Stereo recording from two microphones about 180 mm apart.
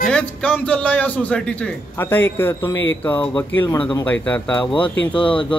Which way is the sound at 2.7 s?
90° left.